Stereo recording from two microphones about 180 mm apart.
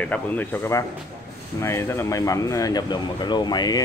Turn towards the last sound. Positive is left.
turn(degrees=20)  # may be behind; listen again after turning